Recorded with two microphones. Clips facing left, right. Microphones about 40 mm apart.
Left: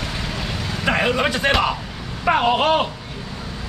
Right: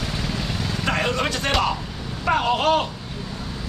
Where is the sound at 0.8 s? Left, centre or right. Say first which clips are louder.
Left 4 dB; centre.